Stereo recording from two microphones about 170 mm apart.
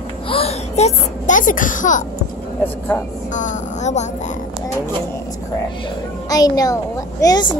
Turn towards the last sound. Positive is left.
turn(degrees=25)  # may be behind; listen again after turning